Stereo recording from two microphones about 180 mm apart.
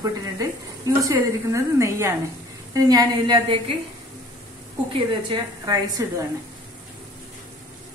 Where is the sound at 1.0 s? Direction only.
15° right (ahead or behind).